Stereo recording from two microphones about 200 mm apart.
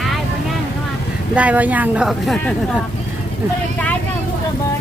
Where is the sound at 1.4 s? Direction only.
10° right (ahead or behind).